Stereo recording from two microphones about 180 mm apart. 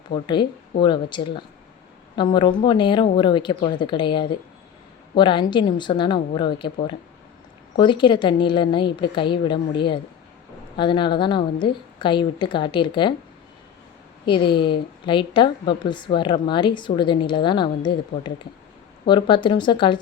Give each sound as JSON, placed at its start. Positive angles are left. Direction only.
{"t": 0.1, "sound": "a woman's voice", "side_deg": 25}
{"t": 7.8, "sound": "a woman's voice", "side_deg": 25}
{"t": 14.3, "sound": "a woman's voice", "side_deg": 25}